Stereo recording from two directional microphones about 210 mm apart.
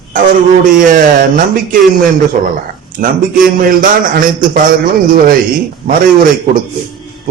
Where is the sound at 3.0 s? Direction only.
40° right (ahead or behind).